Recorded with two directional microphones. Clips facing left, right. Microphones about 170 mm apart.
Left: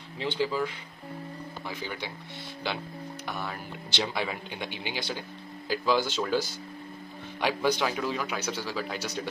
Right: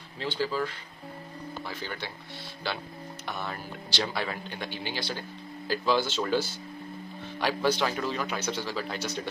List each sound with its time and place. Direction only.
0.2 s speech: 15° left (ahead or behind)
1.7 s speech: 15° left (ahead or behind)
3.3 s speech: 10° left (ahead or behind)
7.6 s speech: 10° left (ahead or behind)